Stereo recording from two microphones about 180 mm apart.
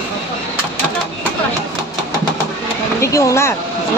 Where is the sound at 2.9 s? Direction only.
15° left (ahead or behind).